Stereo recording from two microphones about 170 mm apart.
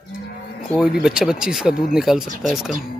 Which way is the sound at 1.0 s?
5° right (ahead or behind).